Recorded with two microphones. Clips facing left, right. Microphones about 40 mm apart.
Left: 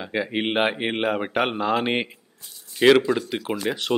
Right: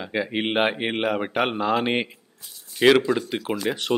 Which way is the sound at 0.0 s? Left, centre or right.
Centre.